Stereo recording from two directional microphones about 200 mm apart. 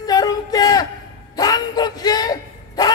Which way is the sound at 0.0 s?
20° left (ahead or behind).